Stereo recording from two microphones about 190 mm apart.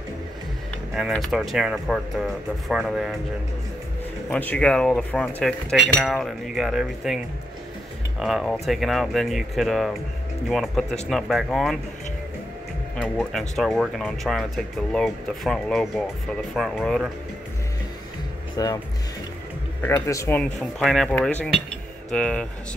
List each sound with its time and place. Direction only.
0.9 s speech: centre (ahead or behind)
4.3 s speech: 5° left (ahead or behind)
8.2 s speech: centre (ahead or behind)
12.9 s speech: centre (ahead or behind)
18.6 s speech: 15° left (ahead or behind)
19.8 s speech: 15° left (ahead or behind)